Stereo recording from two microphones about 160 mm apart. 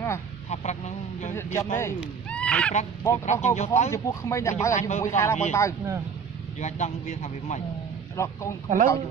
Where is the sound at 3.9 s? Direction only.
20° left (ahead or behind).